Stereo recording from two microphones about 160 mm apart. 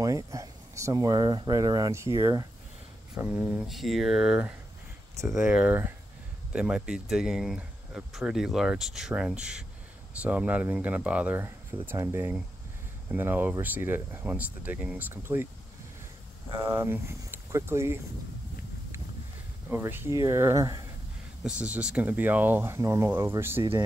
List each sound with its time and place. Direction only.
0.0 s speech: 20° right (ahead or behind)
3.2 s speech: 5° right (ahead or behind)
16.4 s speech: 15° right (ahead or behind)
19.7 s speech: 15° right (ahead or behind)
21.5 s speech: 5° right (ahead or behind)